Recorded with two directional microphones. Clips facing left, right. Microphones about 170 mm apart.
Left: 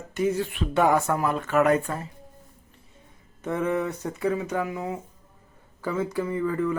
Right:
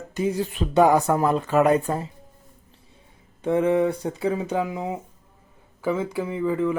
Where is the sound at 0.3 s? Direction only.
35° right (ahead or behind).